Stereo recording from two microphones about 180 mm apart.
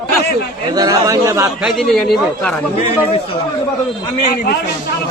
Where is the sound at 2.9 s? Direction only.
30° left (ahead or behind).